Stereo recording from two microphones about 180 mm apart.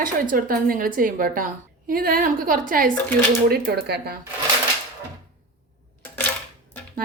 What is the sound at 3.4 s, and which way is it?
Speech, 60° right (ahead or behind).